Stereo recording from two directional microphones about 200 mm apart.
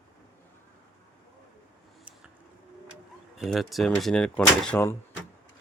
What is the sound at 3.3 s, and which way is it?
Speech, centre (ahead or behind).